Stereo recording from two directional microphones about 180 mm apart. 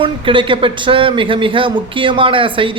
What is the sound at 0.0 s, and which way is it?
A man's voice, 30° right (ahead or behind).